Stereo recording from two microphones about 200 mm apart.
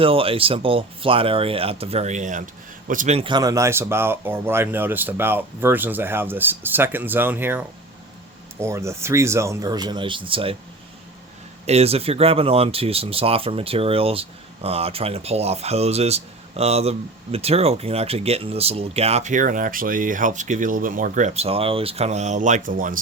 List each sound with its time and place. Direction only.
0.0 s speech: 25° right (ahead or behind)
11.6 s speech: 30° right (ahead or behind)